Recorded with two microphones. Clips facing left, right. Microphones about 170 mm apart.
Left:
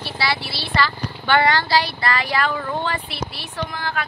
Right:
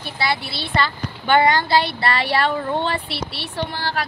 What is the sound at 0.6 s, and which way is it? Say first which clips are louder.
Speech: even; 20° right (ahead or behind).